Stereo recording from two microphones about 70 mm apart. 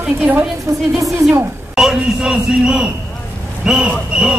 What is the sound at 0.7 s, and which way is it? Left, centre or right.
Speech, right.